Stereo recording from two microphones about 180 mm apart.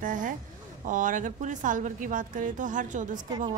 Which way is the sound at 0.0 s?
45° right (ahead or behind).